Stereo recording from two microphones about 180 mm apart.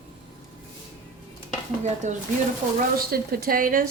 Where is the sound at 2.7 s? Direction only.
55° right (ahead or behind).